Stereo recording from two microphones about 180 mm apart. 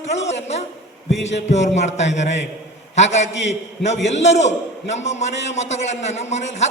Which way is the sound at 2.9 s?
40° left (ahead or behind).